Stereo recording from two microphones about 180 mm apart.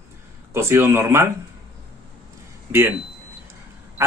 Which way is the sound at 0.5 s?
15° right (ahead or behind).